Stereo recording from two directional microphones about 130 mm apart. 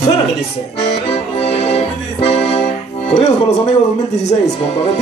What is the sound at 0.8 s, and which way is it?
Accordion, 50° left (ahead or behind).